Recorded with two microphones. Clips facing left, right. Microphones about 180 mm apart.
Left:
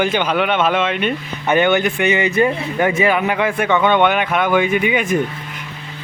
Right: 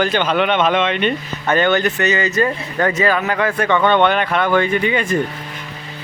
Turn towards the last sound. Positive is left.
turn(degrees=10)  # may be behind; listen again after turning